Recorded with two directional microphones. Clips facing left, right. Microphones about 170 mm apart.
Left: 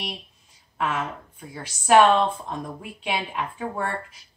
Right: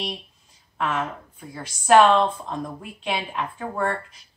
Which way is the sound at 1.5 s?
10° left (ahead or behind).